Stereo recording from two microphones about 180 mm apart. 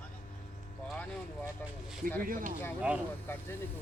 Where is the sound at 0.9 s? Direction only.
5° left (ahead or behind).